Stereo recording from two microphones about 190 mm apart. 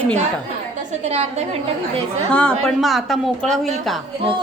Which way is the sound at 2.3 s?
5° left (ahead or behind).